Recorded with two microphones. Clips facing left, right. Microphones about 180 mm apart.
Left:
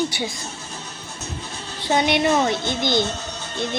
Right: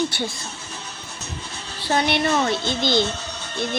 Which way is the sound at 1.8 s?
20° left (ahead or behind).